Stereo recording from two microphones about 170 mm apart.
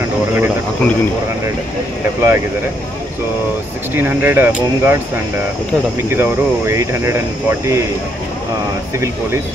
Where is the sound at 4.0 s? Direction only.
10° right (ahead or behind).